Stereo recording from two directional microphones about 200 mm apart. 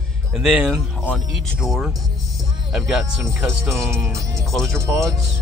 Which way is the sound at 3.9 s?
15° right (ahead or behind).